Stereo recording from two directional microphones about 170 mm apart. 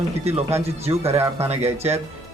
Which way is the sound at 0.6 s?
35° right (ahead or behind).